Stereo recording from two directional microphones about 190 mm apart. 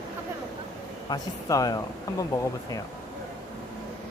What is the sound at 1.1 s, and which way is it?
Speech, 20° left (ahead or behind).